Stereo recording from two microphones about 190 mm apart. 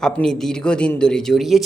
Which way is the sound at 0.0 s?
5° left (ahead or behind).